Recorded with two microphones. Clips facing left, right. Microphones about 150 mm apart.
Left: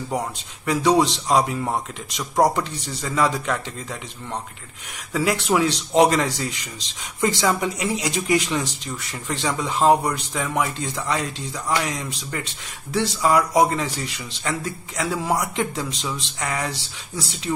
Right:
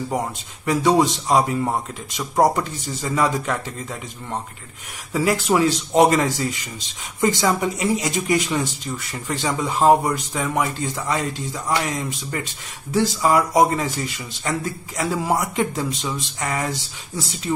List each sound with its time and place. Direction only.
0.1 s speech: centre (ahead or behind)
5.1 s speech: centre (ahead or behind)